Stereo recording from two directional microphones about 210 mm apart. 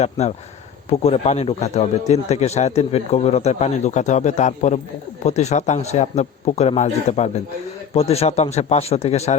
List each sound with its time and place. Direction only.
0.0 s a man's voice: 30° left (ahead or behind)